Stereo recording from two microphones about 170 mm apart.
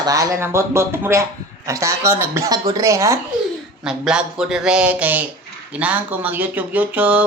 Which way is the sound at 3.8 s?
5° right (ahead or behind).